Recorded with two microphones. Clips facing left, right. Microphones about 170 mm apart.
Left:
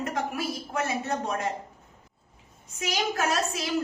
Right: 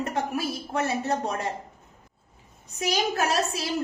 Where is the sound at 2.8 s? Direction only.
35° right (ahead or behind).